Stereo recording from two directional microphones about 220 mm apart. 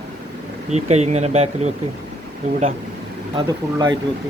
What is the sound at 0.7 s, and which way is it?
Speech, 30° right (ahead or behind).